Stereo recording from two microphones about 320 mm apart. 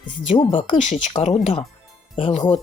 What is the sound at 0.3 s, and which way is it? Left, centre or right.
Speech, centre.